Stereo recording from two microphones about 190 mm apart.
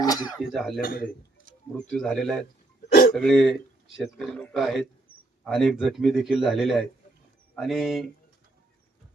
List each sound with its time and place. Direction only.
0.0 s speech: 20° left (ahead or behind)
0.5 s speech: centre (ahead or behind)
0.8 s a man's voice: 50° left (ahead or behind)
1.9 s speech: centre (ahead or behind)
2.9 s hiccup: 50° left (ahead or behind)
3.2 s speech: 5° left (ahead or behind)